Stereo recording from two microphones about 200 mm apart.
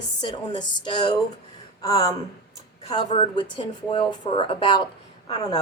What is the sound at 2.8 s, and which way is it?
A woman's voice, 30° left (ahead or behind).